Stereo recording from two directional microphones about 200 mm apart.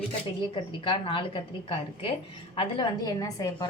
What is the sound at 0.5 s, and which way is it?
A woman's voice, 25° left (ahead or behind).